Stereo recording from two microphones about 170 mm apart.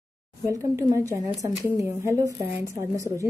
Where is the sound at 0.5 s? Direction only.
20° right (ahead or behind).